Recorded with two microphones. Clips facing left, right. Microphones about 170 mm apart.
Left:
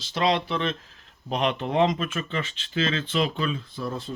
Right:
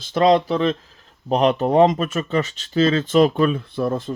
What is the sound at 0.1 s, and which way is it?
Speech, 45° right (ahead or behind).